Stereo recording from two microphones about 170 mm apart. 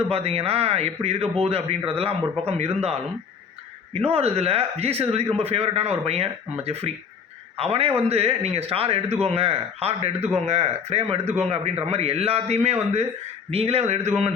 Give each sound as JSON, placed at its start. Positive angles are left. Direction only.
{"t": 0.0, "sound": "speech", "side_deg": -35}